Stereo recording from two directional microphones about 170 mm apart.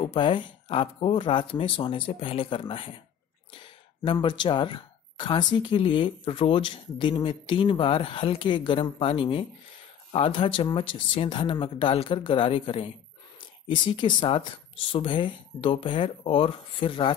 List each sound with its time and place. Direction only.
0.0 s speech: 30° left (ahead or behind)